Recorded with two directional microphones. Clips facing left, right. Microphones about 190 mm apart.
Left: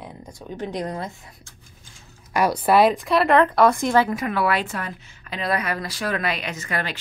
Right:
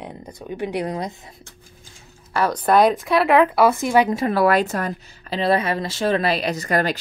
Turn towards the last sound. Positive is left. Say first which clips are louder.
# right 7 dB
turn(degrees=-40)  # may be behind; listen again after turning